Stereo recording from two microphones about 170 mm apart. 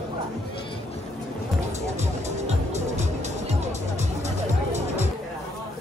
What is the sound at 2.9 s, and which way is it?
Music, 45° right (ahead or behind).